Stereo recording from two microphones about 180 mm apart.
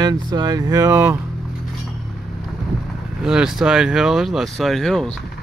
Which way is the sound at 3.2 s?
5° right (ahead or behind).